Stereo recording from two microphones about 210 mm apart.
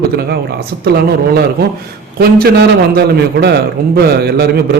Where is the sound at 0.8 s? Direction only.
50° right (ahead or behind).